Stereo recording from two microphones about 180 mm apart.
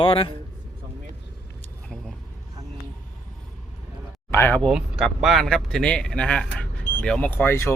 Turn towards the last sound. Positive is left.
turn(degrees=15)  # may be behind; listen again after turning